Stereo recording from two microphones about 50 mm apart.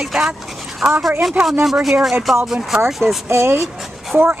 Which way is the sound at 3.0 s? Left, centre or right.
Right.